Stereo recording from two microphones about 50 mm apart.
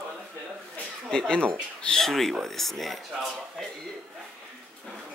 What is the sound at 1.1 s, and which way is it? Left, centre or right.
Speech, centre.